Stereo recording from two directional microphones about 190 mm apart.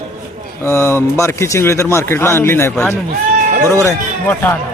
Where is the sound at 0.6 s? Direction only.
15° left (ahead or behind).